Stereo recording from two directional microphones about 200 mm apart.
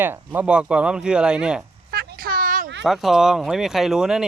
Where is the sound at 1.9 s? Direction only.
50° right (ahead or behind).